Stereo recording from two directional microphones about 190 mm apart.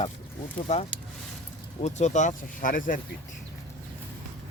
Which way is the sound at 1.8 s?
35° left (ahead or behind).